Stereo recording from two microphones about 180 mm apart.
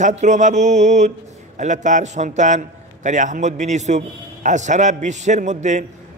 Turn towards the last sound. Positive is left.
turn(degrees=-40)  # may be behind; listen again after turning